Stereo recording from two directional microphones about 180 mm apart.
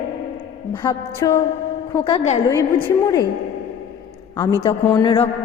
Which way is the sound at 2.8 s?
20° left (ahead or behind).